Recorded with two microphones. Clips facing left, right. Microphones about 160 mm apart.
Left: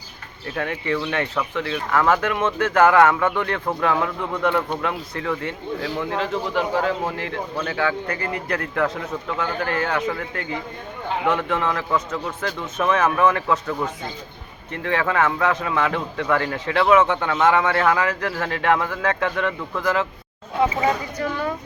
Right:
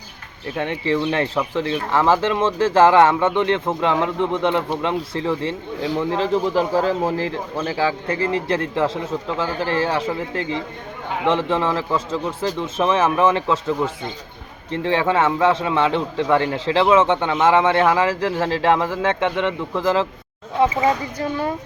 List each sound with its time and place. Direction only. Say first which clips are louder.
0.5 s a man's voice: right 3 dB; 25° right (ahead or behind)